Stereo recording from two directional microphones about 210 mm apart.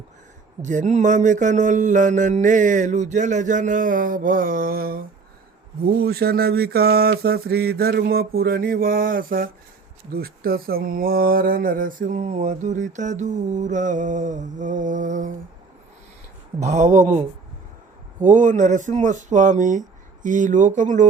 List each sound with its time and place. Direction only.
0.6 s speech: 35° right (ahead or behind)
6.0 s mantra: 45° right (ahead or behind)
10.1 s speech: 45° right (ahead or behind)
16.6 s speech: 35° right (ahead or behind)